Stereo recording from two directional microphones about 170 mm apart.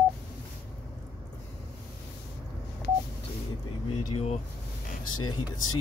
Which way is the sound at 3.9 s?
35° left (ahead or behind).